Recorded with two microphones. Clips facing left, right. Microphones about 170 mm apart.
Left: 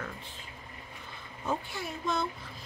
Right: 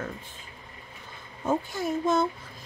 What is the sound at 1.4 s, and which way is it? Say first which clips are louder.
Speech: right 7 dB; 45° right (ahead or behind).